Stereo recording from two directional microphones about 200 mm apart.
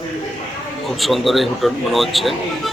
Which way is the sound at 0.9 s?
Centre (ahead or behind).